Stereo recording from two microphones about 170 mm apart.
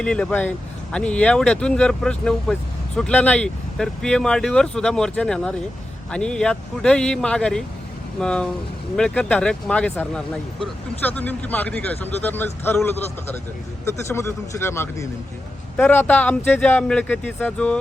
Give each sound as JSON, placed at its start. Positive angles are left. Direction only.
{"t": 0.0, "sound": "speech", "side_deg": 5}